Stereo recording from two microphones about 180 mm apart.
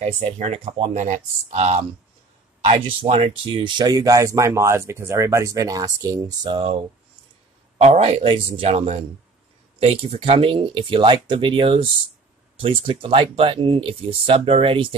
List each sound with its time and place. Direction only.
0.0 s speech: 35° right (ahead or behind)